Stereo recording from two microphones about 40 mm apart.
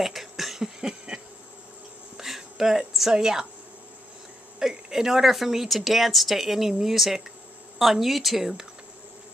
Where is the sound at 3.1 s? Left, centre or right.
Centre.